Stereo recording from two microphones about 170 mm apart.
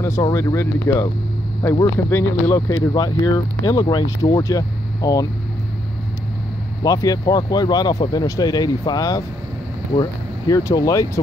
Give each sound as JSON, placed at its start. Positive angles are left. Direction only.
{"t": 0.2, "sound": "speech", "side_deg": 20}
{"t": 6.8, "sound": "speech", "side_deg": 20}
{"t": 10.5, "sound": "speech", "side_deg": 20}